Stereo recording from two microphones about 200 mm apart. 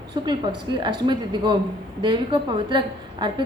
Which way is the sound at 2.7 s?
25° right (ahead or behind).